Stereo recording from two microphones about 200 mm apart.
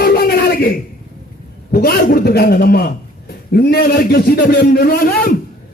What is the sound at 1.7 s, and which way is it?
A man's voice, 50° left (ahead or behind).